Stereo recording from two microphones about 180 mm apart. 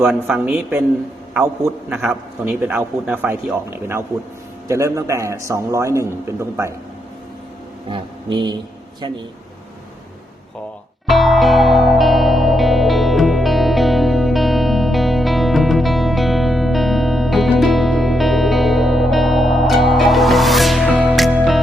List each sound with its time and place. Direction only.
0.1 s a man's voice: 5° right (ahead or behind)
1.9 s a man's voice: 10° right (ahead or behind)
7.9 s speech: 25° right (ahead or behind)
11.0 s music: centre (ahead or behind)